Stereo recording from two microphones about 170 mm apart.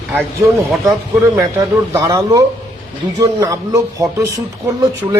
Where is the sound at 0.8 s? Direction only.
20° right (ahead or behind).